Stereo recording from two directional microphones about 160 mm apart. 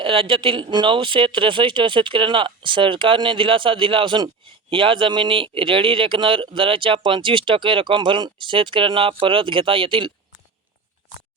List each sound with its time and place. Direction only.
0.0 s speech: 35° right (ahead or behind)